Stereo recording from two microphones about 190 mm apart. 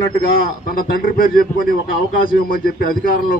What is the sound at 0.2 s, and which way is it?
A man's voice, 50° left (ahead or behind).